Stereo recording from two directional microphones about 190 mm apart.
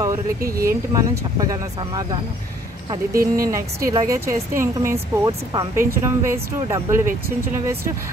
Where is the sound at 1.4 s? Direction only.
20° right (ahead or behind).